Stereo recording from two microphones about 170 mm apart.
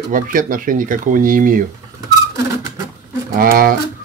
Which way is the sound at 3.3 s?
60° right (ahead or behind).